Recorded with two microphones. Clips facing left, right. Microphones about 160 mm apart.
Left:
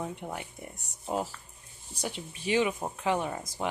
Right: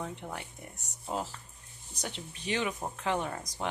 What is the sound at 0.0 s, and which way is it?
Speech, 10° left (ahead or behind).